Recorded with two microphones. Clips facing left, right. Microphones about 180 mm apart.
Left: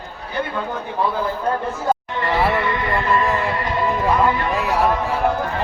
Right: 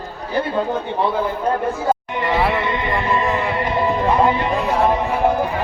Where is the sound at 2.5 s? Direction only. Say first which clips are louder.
Even; 20° right (ahead or behind).